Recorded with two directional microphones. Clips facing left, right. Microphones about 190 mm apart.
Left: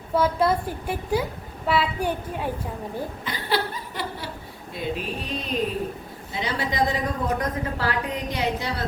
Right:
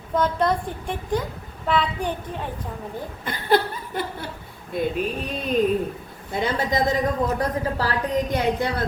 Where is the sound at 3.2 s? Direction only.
50° right (ahead or behind).